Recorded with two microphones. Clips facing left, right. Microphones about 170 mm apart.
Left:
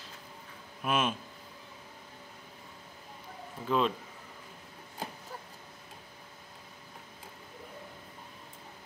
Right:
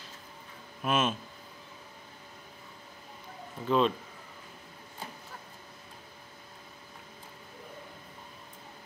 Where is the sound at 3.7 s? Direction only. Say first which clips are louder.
Right 3 dB; 10° left (ahead or behind).